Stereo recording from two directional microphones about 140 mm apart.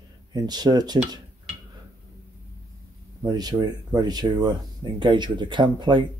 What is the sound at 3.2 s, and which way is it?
Speech, 30° right (ahead or behind).